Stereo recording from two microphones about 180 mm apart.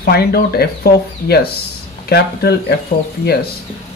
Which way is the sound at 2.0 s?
60° left (ahead or behind).